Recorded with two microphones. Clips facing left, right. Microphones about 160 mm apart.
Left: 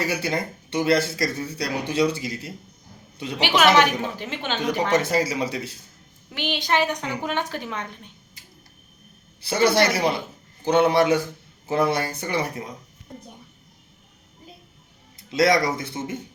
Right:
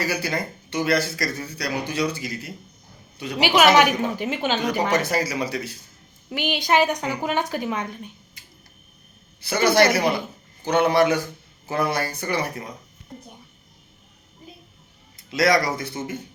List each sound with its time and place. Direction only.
0.0 s speech: 25° left (ahead or behind)
3.3 s a woman's voice: 10° right (ahead or behind)
4.6 s speech: 25° left (ahead or behind)
6.3 s a woman's voice: 10° right (ahead or behind)
9.4 s speech: 30° left (ahead or behind)
15.1 s speech: 25° left (ahead or behind)